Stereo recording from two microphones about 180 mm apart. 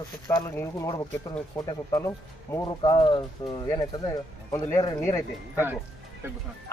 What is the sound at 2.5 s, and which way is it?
Speech, 20° left (ahead or behind).